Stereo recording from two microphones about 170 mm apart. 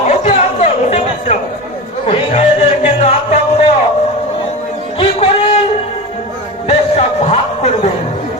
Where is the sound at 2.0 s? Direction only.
40° left (ahead or behind).